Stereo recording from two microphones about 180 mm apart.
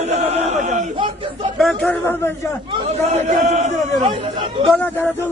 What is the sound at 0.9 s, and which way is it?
Speech, 30° right (ahead or behind).